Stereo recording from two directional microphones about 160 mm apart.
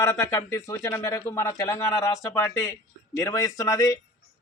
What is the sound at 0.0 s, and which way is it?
A man's voice, 20° left (ahead or behind).